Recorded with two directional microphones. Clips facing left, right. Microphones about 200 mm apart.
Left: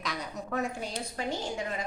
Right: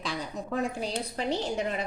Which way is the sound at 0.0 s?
30° right (ahead or behind).